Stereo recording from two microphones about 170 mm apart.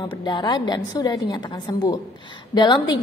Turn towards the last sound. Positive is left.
turn(degrees=25)  # may be behind; listen again after turning